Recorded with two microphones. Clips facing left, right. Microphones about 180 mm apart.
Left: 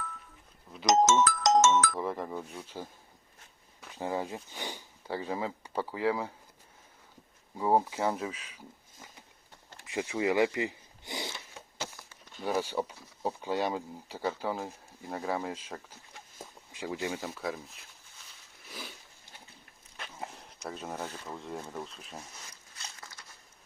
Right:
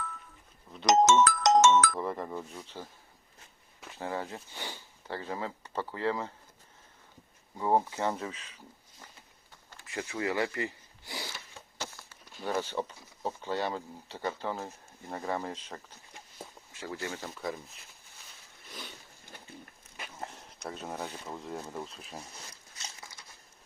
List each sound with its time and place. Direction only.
0.9 s music: 65° right (ahead or behind)
2.0 s speech: centre (ahead or behind)
3.9 s speech: 15° left (ahead or behind)
7.5 s a sound: 10° left (ahead or behind)
11.8 s a sound: 10° left (ahead or behind)
12.5 s speech: 10° left (ahead or behind)
20.0 s walk: centre (ahead or behind)
20.7 s speech: centre (ahead or behind)